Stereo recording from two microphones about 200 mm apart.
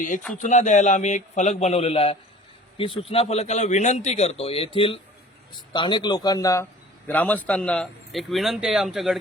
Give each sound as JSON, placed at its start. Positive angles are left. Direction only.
{"t": 0.3, "sound": "a man's voice", "side_deg": 35}